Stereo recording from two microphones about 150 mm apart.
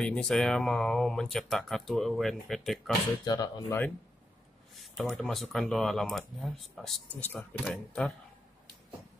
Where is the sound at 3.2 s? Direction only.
25° left (ahead or behind).